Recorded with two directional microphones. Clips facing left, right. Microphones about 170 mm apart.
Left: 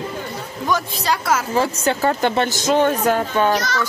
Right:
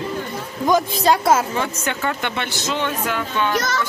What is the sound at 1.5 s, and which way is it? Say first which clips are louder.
Speech: left 5 dB; 35° left (ahead or behind).